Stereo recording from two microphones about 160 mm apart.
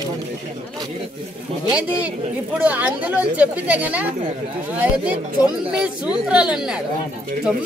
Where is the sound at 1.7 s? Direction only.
5° right (ahead or behind).